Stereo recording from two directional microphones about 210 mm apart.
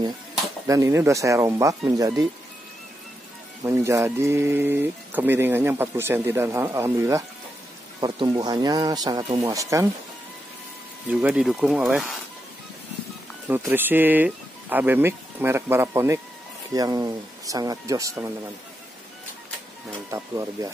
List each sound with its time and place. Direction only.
0.7 s speech: 15° right (ahead or behind)
3.6 s speech: 15° right (ahead or behind)
11.1 s speech: 5° right (ahead or behind)
13.5 s speech: 10° right (ahead or behind)
20.1 s speech: 15° right (ahead or behind)